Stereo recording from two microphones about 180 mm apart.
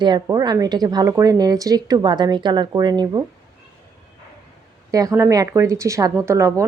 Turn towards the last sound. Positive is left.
turn(degrees=-15)  # may be behind; listen again after turning